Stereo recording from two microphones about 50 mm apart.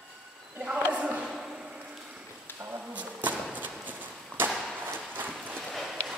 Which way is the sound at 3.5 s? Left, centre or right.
Right.